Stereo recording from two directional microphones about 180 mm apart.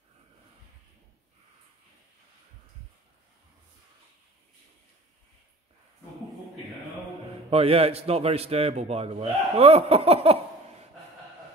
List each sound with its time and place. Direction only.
7.4 s a man's voice: 35° right (ahead or behind)